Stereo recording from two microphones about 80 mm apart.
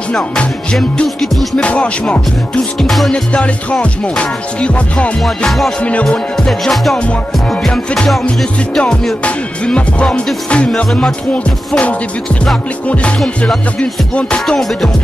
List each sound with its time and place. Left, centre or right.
0.2 s music: centre
1.0 s music: centre
1.6 s music: centre
2.8 s music: centre
3.1 s music: centre
5.2 s music: centre
5.8 s music: centre
14.4 s music: centre